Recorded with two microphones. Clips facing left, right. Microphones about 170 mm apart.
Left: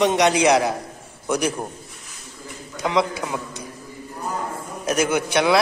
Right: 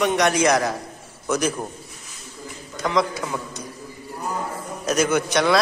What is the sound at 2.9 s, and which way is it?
Speech, 15° left (ahead or behind).